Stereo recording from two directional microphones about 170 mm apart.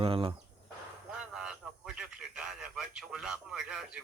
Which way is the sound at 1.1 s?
5° right (ahead or behind).